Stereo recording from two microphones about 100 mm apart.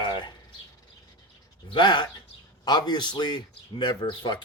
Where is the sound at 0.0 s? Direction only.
50° left (ahead or behind).